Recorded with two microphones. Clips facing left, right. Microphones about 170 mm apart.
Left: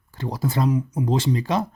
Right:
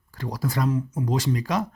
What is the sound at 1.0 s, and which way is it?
Speech, 25° left (ahead or behind).